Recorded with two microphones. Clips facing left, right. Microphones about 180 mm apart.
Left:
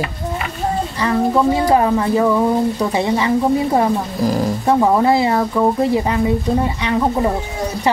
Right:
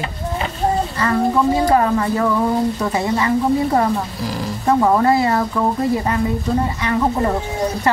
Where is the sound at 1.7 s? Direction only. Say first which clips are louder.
Left 2 dB; 15° left (ahead or behind).